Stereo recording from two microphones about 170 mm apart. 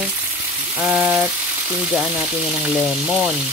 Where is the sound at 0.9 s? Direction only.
10° right (ahead or behind).